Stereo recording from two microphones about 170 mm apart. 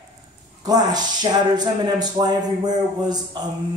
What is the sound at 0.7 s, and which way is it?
Speech, 25° right (ahead or behind).